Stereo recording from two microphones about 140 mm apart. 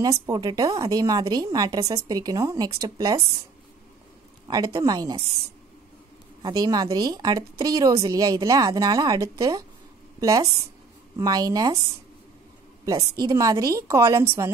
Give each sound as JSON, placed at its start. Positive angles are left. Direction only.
{"t": 0.0, "sound": "a woman's voice", "side_deg": -30}
{"t": 4.5, "sound": "a woman's voice", "side_deg": -30}
{"t": 6.4, "sound": "a woman's voice", "side_deg": -30}
{"t": 11.1, "sound": "a woman's voice", "side_deg": -30}
{"t": 12.8, "sound": "a woman's voice", "side_deg": -25}